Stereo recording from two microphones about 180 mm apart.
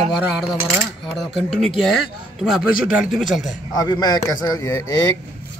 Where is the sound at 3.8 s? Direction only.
20° left (ahead or behind).